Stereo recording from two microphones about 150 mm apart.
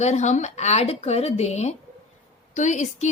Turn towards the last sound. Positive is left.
turn(degrees=55)  # may be behind; listen again after turning